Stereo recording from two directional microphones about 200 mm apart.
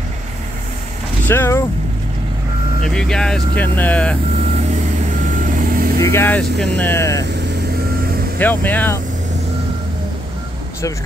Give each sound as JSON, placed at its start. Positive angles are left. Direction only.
{"t": 1.2, "sound": "speech", "side_deg": 10}
{"t": 2.8, "sound": "speech", "side_deg": 5}
{"t": 4.7, "sound": "vehicle", "side_deg": -40}
{"t": 5.9, "sound": "speech", "side_deg": 15}
{"t": 8.4, "sound": "speech", "side_deg": 10}